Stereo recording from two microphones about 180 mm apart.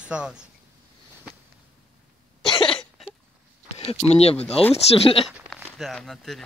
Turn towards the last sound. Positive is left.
turn(degrees=0)  # may be behind; listen again after turning